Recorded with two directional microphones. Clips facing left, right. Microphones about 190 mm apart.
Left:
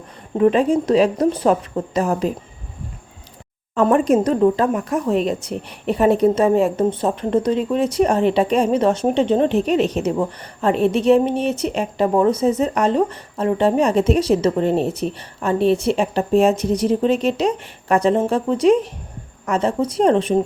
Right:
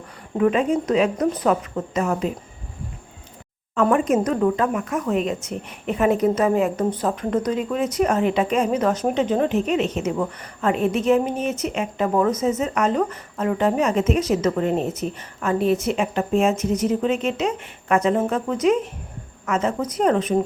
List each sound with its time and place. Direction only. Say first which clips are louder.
0.3 s speech: left 4 dB; 30° left (ahead or behind)
3.8 s speech: left 3 dB; 35° left (ahead or behind)